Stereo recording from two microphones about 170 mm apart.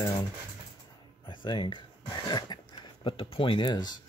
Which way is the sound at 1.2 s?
25° left (ahead or behind).